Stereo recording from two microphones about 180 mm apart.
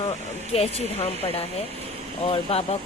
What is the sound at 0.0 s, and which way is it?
Speech, 35° left (ahead or behind).